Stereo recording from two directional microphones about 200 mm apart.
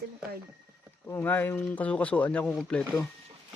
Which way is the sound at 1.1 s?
10° left (ahead or behind).